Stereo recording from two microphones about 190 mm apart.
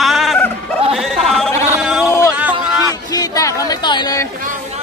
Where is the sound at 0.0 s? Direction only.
Centre (ahead or behind).